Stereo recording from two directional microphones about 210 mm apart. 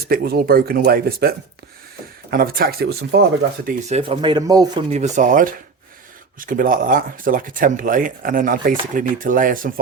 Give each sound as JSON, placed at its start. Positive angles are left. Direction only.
{"t": 0.1, "sound": "speech", "side_deg": -45}
{"t": 2.3, "sound": "speech", "side_deg": -45}
{"t": 3.8, "sound": "speech", "side_deg": -30}
{"t": 4.9, "sound": "speech", "side_deg": -35}